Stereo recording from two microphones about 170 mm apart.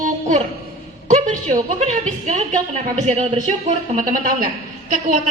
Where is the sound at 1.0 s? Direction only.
45° right (ahead or behind).